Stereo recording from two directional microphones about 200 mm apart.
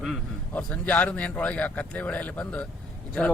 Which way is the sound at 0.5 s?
10° left (ahead or behind).